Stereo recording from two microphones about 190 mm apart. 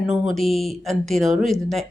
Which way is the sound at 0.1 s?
Centre (ahead or behind).